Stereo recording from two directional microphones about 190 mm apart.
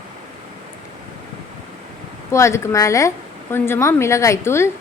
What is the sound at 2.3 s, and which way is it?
A woman's voice, 15° left (ahead or behind).